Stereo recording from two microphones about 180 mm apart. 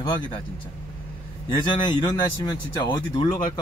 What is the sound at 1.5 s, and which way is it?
Speech, 25° left (ahead or behind).